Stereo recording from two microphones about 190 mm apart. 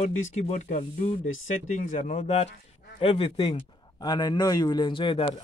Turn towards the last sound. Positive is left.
turn(degrees=25)  # may be behind; listen again after turning